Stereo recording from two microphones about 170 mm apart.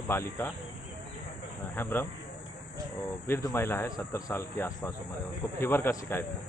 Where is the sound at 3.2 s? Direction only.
15° left (ahead or behind).